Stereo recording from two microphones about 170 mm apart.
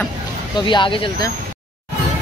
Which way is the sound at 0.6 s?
25° left (ahead or behind).